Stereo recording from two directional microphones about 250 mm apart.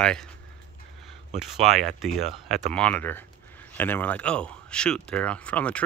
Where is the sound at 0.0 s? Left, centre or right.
Centre.